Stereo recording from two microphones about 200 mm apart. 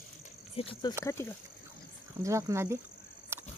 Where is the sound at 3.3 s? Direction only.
10° right (ahead or behind).